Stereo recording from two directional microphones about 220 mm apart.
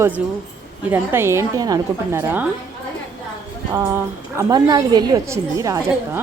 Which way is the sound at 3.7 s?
15° right (ahead or behind).